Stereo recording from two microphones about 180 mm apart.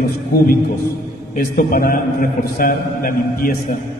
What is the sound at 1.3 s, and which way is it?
A man's voice, 50° left (ahead or behind).